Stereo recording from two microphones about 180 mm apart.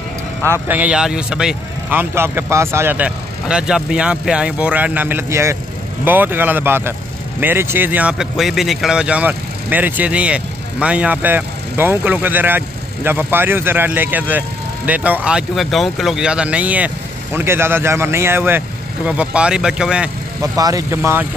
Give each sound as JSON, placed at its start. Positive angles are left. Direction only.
{"t": 0.5, "sound": "speech", "side_deg": -10}
{"t": 20.5, "sound": "speech", "side_deg": -20}